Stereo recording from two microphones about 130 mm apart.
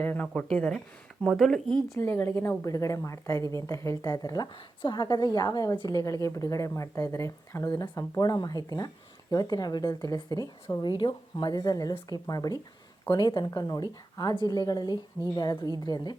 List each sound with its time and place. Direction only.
0.0 s speech: 15° left (ahead or behind)
1.9 s a woman's voice: 20° left (ahead or behind)